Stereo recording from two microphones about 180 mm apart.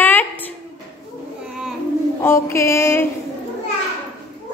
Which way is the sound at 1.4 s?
5° right (ahead or behind).